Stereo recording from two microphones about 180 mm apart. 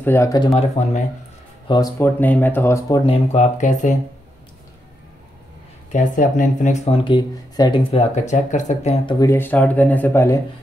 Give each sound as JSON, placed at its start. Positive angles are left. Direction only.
{"t": 0.0, "sound": "speech", "side_deg": 15}
{"t": 0.6, "sound": "speech", "side_deg": 40}
{"t": 2.0, "sound": "speech", "side_deg": 10}
{"t": 3.1, "sound": "speech", "side_deg": 40}
{"t": 5.9, "sound": "speech", "side_deg": 45}
{"t": 9.2, "sound": "speech", "side_deg": 15}